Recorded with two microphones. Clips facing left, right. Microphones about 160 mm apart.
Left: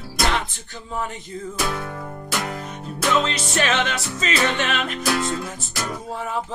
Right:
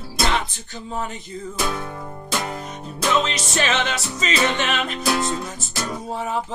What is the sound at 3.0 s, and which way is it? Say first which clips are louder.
Music: even; 20° right (ahead or behind).